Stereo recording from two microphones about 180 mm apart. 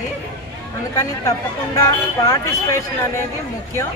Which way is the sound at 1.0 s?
15° left (ahead or behind).